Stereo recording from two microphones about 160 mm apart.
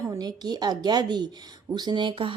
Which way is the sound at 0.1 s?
25° right (ahead or behind).